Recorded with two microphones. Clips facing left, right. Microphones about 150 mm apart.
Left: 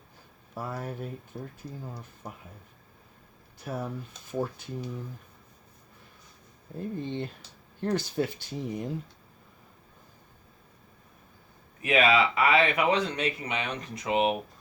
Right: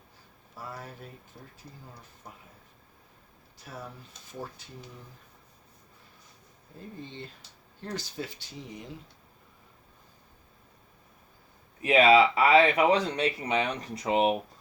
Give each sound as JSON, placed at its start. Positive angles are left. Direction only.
{"t": 0.5, "sound": "speech", "side_deg": 55}
{"t": 3.6, "sound": "speech", "side_deg": 60}
{"t": 7.8, "sound": "speech", "side_deg": 55}
{"t": 11.8, "sound": "speech", "side_deg": -30}